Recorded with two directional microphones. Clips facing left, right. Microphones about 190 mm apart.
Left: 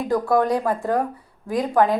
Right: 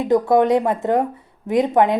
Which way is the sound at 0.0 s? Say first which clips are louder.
Right 4 dB; 20° right (ahead or behind).